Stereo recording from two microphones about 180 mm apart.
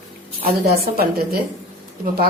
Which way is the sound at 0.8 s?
60° right (ahead or behind).